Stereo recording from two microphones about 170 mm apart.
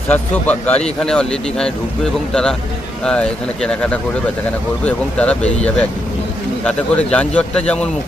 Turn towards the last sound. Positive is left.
turn(degrees=5)  # may be behind; listen again after turning